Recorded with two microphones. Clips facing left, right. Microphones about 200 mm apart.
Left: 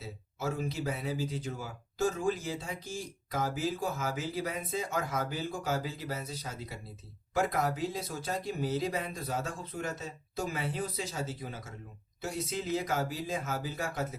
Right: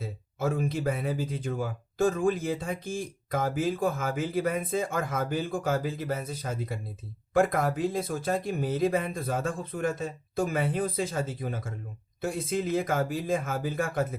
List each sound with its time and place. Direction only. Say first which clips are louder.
0.0 s speech: right 6 dB; 55° right (ahead or behind)